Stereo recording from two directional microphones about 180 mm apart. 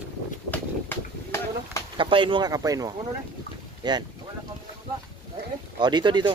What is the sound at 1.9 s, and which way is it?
Speech, 30° right (ahead or behind).